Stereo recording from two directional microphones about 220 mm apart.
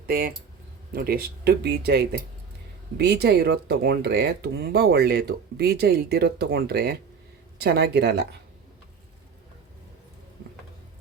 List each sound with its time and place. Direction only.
0.0 s speech: 40° right (ahead or behind)